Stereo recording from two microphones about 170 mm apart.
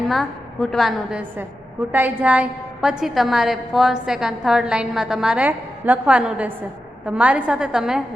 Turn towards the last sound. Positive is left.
turn(degrees=-5)  # may be behind; listen again after turning